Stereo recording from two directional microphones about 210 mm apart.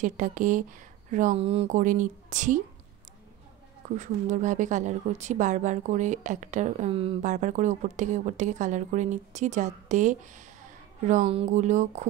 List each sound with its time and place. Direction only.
0.0 s a woman's voice: 40° right (ahead or behind)
3.9 s a woman's voice: 35° right (ahead or behind)